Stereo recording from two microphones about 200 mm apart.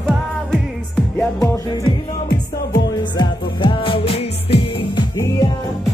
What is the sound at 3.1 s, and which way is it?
Music, 25° left (ahead or behind).